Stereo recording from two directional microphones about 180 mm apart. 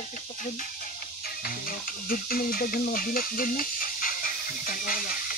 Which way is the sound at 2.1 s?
55° left (ahead or behind).